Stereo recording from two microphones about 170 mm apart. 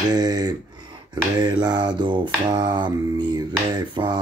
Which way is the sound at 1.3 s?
25° right (ahead or behind).